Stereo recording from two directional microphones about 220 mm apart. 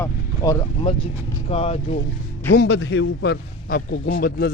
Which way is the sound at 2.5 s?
50° left (ahead or behind).